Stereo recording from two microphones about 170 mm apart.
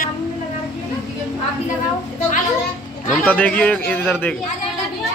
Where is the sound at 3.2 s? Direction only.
10° left (ahead or behind).